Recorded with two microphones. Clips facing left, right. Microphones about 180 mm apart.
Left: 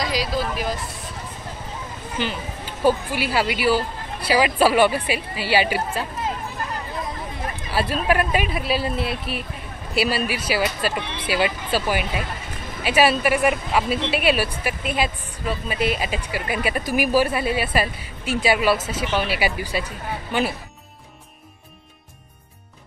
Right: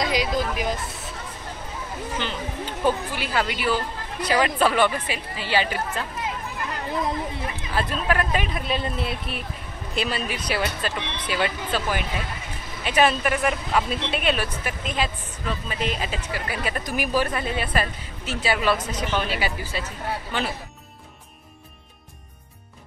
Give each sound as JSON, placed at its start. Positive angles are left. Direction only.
{"t": 0.0, "sound": "speech", "side_deg": -20}
{"t": 2.2, "sound": "speech", "side_deg": 10}
{"t": 7.7, "sound": "speech", "side_deg": 10}